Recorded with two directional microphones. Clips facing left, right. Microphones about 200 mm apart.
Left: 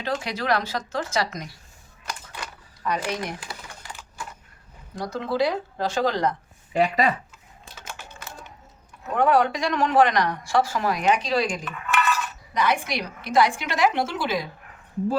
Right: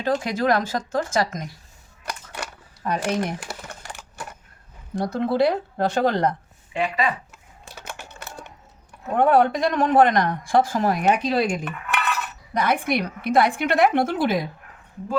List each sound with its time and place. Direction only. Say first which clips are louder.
0.0 s speech: right 6 dB; 45° right (ahead or behind)
2.8 s speech: right 3 dB; 50° right (ahead or behind)
3.9 s a sound: right 1 dB; 70° right (ahead or behind)
5.0 s speech: right 4 dB; 55° right (ahead or behind)
6.7 s speech: left 3 dB; 40° left (ahead or behind)
7.8 s typing: right 3 dB; 60° right (ahead or behind)
9.1 s speech: right 3 dB; 55° right (ahead or behind)